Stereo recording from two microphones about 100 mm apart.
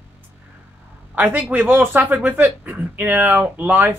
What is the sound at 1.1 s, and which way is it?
Speech, 20° right (ahead or behind).